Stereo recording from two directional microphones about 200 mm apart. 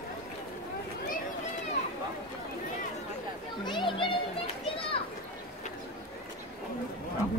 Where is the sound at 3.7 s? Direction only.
25° left (ahead or behind).